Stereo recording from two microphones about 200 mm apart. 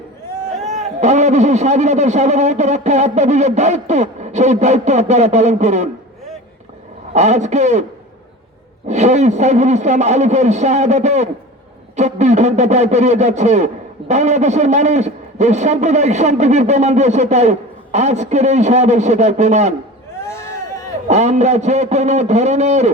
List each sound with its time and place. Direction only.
0.7 s a man's voice: 35° right (ahead or behind)
7.1 s a man's voice: 35° right (ahead or behind)
8.9 s a man's voice: 35° right (ahead or behind)
20.1 s a sound: 15° left (ahead or behind)
21.1 s a man's voice: 35° right (ahead or behind)